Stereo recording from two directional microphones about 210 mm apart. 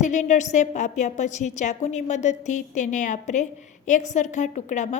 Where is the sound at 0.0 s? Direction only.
35° left (ahead or behind).